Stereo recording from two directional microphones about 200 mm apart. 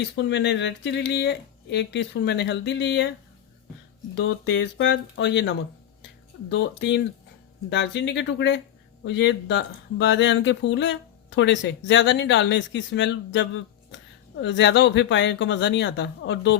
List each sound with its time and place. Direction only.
0.0 s speech: 65° left (ahead or behind)
4.1 s speech: 65° left (ahead or behind)